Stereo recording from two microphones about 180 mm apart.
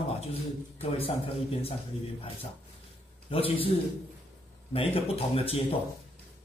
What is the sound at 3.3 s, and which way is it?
A man's voice, 30° left (ahead or behind).